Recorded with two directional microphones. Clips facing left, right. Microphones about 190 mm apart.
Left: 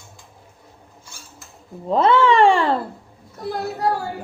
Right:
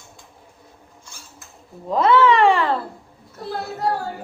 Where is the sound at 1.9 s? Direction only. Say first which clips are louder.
Even; 30° left (ahead or behind).